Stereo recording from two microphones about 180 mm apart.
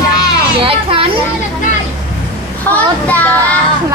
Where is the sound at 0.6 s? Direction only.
30° right (ahead or behind).